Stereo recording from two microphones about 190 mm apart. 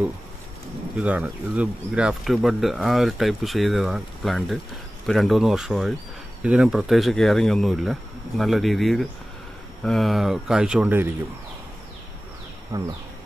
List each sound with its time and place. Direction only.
0.9 s speech: 5° right (ahead or behind)
12.7 s speech: 15° right (ahead or behind)